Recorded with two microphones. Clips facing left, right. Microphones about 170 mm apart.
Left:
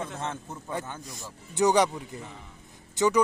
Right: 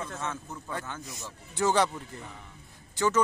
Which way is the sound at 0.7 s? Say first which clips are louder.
Left 3 dB; 15° left (ahead or behind).